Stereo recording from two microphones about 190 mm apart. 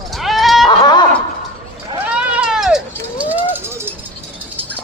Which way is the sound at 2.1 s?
5° right (ahead or behind).